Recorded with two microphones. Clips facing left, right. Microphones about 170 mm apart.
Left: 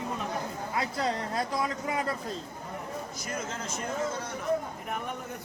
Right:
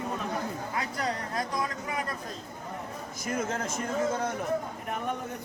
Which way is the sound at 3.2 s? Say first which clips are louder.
Right 9 dB; 55° right (ahead or behind).